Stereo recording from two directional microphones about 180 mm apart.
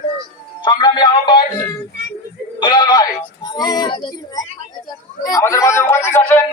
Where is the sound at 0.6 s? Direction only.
25° left (ahead or behind).